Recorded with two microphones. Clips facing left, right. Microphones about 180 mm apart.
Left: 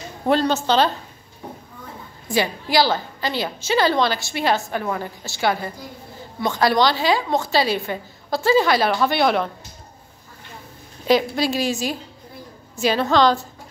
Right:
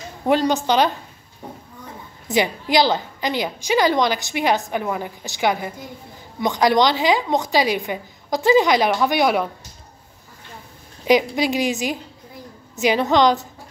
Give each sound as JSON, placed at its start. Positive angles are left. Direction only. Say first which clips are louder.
{"t": 0.3, "sound": "a woman's voice", "louder": "right 1 dB", "side_deg": -15}
{"t": 2.2, "sound": "a woman's voice", "louder": "right 2 dB", "side_deg": -20}
{"t": 11.1, "sound": "a woman's voice", "louder": "right 1 dB", "side_deg": -15}